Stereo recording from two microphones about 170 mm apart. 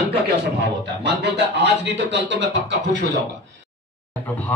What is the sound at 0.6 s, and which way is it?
A man's voice, 90° right.